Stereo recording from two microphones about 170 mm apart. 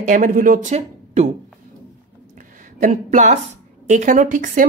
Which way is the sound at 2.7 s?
50° right (ahead or behind).